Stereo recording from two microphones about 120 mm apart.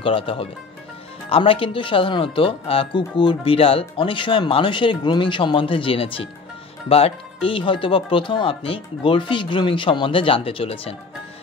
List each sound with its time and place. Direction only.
0.0 s speech: 50° left (ahead or behind)